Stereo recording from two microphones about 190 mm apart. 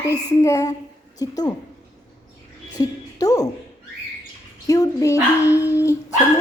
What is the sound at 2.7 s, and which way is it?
Speech, 20° left (ahead or behind).